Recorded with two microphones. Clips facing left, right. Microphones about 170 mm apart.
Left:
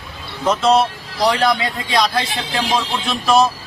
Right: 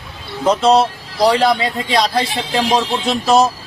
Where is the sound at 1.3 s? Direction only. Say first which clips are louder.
Right 3 dB; 35° right (ahead or behind).